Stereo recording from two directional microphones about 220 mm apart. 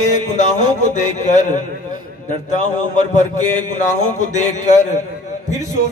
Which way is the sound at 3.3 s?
35° left (ahead or behind).